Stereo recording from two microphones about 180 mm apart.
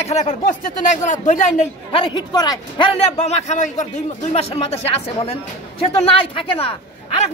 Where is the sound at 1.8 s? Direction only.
25° left (ahead or behind).